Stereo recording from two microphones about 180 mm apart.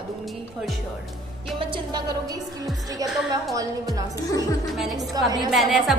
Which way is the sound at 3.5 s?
20° right (ahead or behind).